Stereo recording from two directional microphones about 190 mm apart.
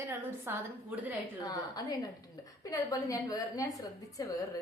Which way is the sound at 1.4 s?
20° left (ahead or behind).